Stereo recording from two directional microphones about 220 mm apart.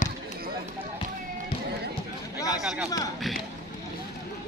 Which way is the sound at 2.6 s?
Centre (ahead or behind).